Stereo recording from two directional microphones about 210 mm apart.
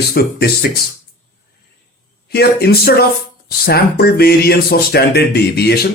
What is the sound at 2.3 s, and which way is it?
Speech, 50° left (ahead or behind).